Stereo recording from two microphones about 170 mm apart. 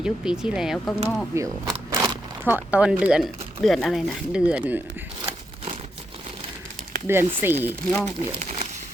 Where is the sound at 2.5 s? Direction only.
10° right (ahead or behind).